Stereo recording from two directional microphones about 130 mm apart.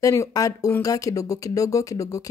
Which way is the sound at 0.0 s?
25° left (ahead or behind).